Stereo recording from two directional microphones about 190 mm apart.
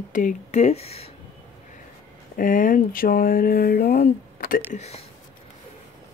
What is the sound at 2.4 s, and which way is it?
Speech, 45° left (ahead or behind).